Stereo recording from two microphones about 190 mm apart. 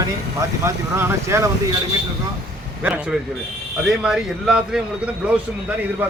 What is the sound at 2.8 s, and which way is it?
A man's voice, 5° right (ahead or behind).